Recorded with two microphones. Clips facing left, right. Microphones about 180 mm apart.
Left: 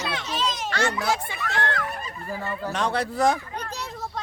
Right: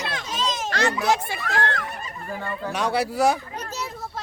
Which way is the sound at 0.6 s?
40° right (ahead or behind).